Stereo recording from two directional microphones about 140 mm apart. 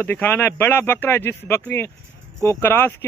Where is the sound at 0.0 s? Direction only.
15° left (ahead or behind).